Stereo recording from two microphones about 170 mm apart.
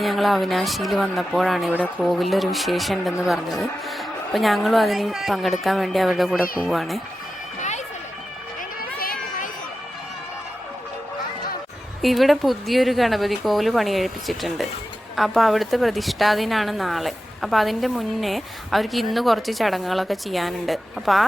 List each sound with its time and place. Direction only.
0.0 s a woman's voice: centre (ahead or behind)
8.8 s a sound: 60° left (ahead or behind)
12.0 s a woman's voice: centre (ahead or behind)